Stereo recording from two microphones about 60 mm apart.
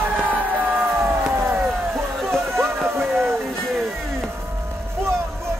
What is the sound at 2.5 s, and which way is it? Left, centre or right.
Music, right.